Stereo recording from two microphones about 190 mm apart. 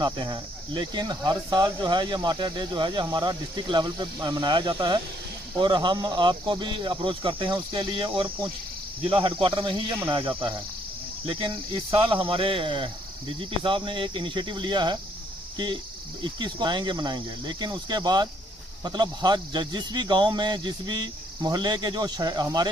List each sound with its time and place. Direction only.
0.0 s speech: 20° right (ahead or behind)
12.1 s speech: 30° right (ahead or behind)